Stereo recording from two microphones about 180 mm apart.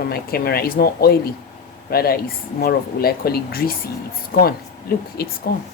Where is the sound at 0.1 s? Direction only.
55° left (ahead or behind).